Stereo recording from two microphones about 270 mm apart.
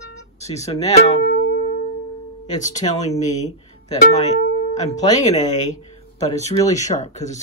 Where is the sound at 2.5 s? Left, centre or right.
Left.